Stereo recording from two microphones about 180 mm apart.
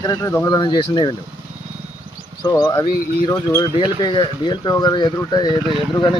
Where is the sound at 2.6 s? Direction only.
15° left (ahead or behind).